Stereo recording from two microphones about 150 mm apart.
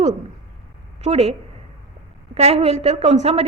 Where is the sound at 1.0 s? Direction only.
45° right (ahead or behind).